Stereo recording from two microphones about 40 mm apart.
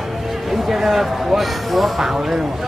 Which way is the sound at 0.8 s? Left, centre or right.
Centre.